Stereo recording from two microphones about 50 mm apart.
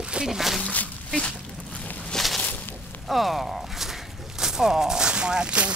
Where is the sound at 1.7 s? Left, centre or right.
Left.